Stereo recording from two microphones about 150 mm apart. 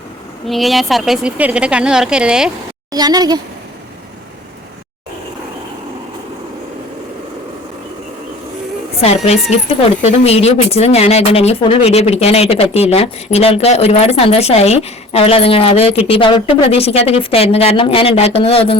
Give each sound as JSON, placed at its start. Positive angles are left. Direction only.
{"t": 0.4, "sound": "a woman's voice", "side_deg": 0}
{"t": 2.9, "sound": "speech", "side_deg": -25}
{"t": 9.0, "sound": "a woman's voice", "side_deg": 45}